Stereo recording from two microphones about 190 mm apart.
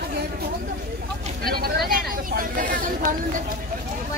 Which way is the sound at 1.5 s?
55° right (ahead or behind).